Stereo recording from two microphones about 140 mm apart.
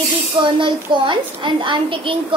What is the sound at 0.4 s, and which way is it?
A woman's voice, 35° right (ahead or behind).